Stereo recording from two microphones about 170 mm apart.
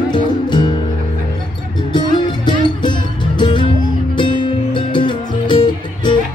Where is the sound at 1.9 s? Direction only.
25° left (ahead or behind).